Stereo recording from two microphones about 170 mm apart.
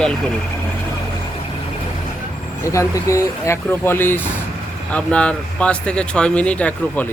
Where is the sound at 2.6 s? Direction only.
20° left (ahead or behind).